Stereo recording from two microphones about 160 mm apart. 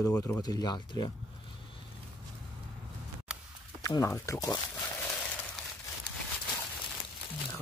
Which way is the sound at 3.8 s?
20° left (ahead or behind).